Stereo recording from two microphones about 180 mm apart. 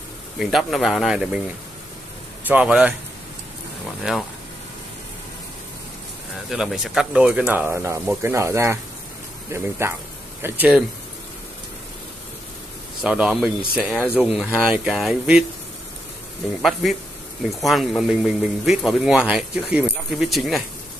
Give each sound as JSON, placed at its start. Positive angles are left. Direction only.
{"t": 0.4, "sound": "speech", "side_deg": 0}
{"t": 2.4, "sound": "speech", "side_deg": -5}
{"t": 4.1, "sound": "speech", "side_deg": -5}
{"t": 6.5, "sound": "speech", "side_deg": 0}
{"t": 13.0, "sound": "speech", "side_deg": -5}
{"t": 17.5, "sound": "speech", "side_deg": 0}